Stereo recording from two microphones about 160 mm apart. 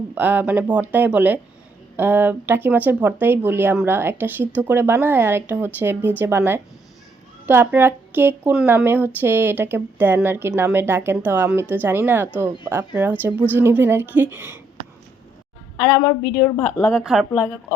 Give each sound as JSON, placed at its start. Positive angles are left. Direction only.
{"t": 0.1, "sound": "a woman's voice", "side_deg": -10}
{"t": 15.8, "sound": "a woman's voice", "side_deg": 20}
{"t": 16.7, "sound": "speech", "side_deg": 0}